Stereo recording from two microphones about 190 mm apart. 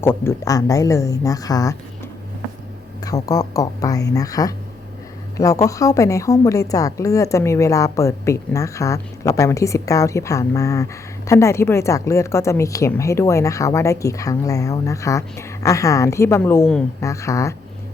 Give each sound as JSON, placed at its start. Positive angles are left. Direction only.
{"t": 0.0, "sound": "a woman's voice", "side_deg": 10}
{"t": 3.0, "sound": "a woman's voice", "side_deg": 20}